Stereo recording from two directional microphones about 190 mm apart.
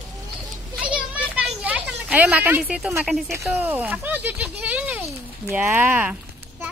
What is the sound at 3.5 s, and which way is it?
Speech, 5° right (ahead or behind).